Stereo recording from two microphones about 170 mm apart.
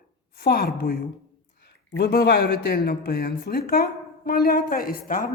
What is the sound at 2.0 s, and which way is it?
A woman's voice, 65° left (ahead or behind).